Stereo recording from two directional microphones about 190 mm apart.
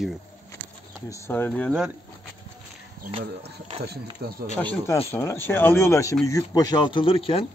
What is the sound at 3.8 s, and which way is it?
Speech, 55° right (ahead or behind).